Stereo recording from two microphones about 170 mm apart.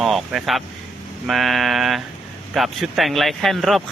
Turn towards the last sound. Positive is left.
turn(degrees=0)  # may be behind; listen again after turning